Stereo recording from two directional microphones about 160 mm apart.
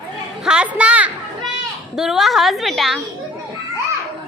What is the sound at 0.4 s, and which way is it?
A woman's voice, 5° right (ahead or behind).